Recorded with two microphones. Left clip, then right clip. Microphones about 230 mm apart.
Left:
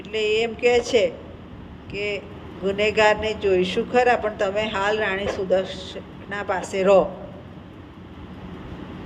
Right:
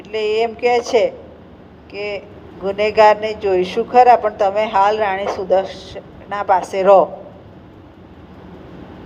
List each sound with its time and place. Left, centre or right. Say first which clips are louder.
0.1 s speech: right 4 dB; right